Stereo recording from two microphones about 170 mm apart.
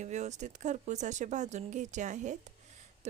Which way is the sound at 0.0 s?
45° right (ahead or behind).